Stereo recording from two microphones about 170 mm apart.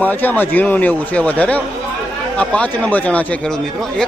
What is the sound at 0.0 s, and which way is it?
A man's voice, 10° left (ahead or behind).